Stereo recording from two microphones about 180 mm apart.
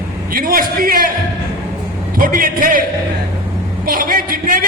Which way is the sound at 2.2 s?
50° right (ahead or behind).